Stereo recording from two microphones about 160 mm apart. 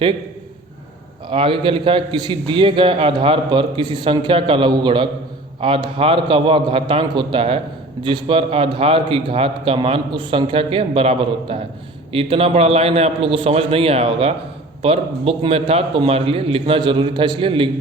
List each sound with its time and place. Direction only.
1.3 s a man's voice: 30° right (ahead or behind)